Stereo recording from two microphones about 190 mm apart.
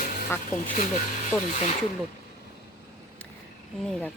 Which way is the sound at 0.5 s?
40° left (ahead or behind).